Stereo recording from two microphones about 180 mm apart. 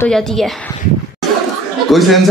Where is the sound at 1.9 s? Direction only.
Centre (ahead or behind).